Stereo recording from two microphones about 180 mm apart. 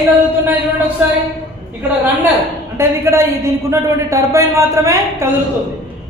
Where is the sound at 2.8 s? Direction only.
15° right (ahead or behind).